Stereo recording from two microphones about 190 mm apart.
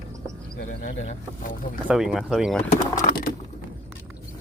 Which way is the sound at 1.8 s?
5° right (ahead or behind).